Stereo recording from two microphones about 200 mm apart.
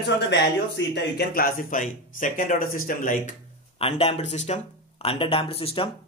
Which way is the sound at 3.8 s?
30° left (ahead or behind).